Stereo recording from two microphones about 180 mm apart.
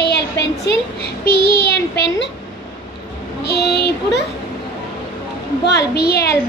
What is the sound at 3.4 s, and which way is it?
Speech, 60° left (ahead or behind).